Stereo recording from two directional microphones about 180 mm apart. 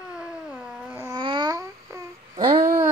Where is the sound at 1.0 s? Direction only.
25° right (ahead or behind).